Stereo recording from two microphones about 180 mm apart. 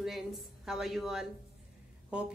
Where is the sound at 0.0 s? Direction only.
Centre (ahead or behind).